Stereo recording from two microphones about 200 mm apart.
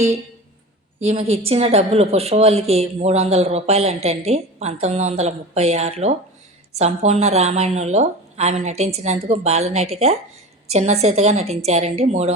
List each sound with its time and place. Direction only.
0.9 s a woman's voice: 30° right (ahead or behind)